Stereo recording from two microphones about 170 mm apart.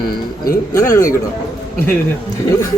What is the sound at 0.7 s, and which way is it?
Speech, 20° left (ahead or behind).